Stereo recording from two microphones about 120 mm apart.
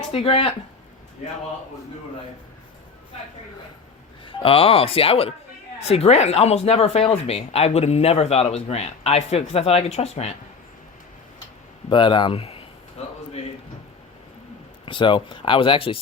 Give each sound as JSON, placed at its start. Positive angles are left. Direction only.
{"t": 0.1, "sound": "speech", "side_deg": 55}
{"t": 4.3, "sound": "speech", "side_deg": 50}
{"t": 11.9, "sound": "speech", "side_deg": 45}
{"t": 13.0, "sound": "a man's voice", "side_deg": 65}
{"t": 14.8, "sound": "speech", "side_deg": 45}